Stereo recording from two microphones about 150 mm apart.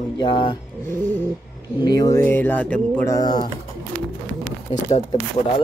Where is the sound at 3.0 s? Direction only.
25° left (ahead or behind).